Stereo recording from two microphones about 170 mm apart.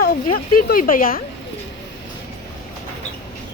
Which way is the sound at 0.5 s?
55° left (ahead or behind).